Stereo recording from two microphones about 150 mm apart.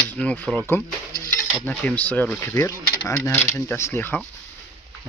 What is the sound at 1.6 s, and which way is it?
Speech, 10° left (ahead or behind).